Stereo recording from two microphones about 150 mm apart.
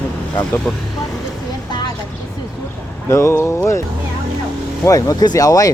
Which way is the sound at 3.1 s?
20° left (ahead or behind).